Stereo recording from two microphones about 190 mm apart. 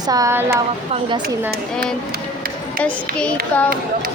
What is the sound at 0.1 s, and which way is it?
Speech, 15° right (ahead or behind).